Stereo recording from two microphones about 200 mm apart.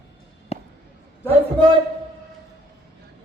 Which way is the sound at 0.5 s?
30° left (ahead or behind).